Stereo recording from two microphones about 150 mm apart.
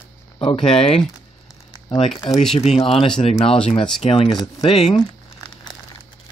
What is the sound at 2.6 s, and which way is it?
Speech, 40° left (ahead or behind).